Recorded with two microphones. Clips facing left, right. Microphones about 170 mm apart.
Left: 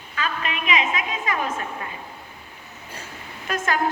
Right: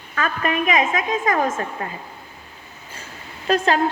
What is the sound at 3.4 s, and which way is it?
Speech, 30° right (ahead or behind).